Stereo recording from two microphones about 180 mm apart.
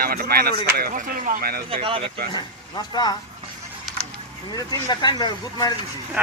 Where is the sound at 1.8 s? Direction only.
30° right (ahead or behind).